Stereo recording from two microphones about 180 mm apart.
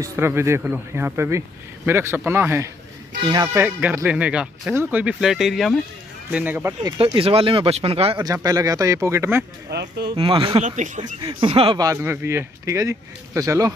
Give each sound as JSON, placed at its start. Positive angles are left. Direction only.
{"t": 0.0, "sound": "speech", "side_deg": -15}
{"t": 3.6, "sound": "speech", "side_deg": -10}
{"t": 6.3, "sound": "speech", "side_deg": -10}
{"t": 6.8, "sound": "speech", "side_deg": -25}
{"t": 8.2, "sound": "speech", "side_deg": -20}
{"t": 9.7, "sound": "speech", "side_deg": -65}
{"t": 10.1, "sound": "speech", "side_deg": -30}